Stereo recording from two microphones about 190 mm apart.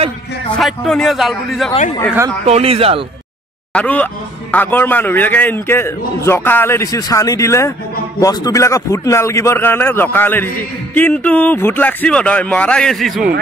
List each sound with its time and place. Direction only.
0.6 s a man's voice: centre (ahead or behind)
2.4 s speech: 30° right (ahead or behind)
3.7 s speech: 10° left (ahead or behind)